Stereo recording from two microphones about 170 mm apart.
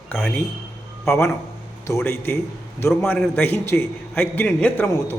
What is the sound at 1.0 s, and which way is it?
A man's voice, 15° left (ahead or behind).